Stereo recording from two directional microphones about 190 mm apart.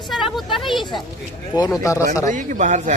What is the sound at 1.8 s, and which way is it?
Speech, 15° left (ahead or behind).